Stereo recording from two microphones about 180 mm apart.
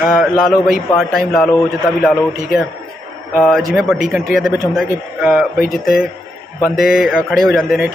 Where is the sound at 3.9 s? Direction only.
Centre (ahead or behind).